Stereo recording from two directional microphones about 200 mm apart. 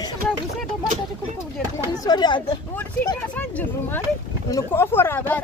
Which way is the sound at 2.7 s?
10° left (ahead or behind).